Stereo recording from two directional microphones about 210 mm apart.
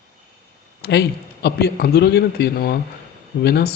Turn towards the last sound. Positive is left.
turn(degrees=50)  # may be behind; listen again after turning